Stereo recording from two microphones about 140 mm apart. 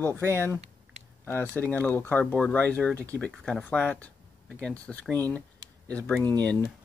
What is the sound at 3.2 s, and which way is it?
Speech, 5° left (ahead or behind).